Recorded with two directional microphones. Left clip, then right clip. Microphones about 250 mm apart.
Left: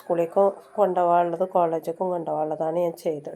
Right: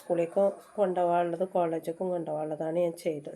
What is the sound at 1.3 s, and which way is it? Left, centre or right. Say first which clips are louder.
Speech: left 6 dB; left.